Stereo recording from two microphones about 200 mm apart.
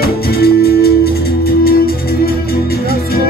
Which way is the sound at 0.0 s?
50° left (ahead or behind).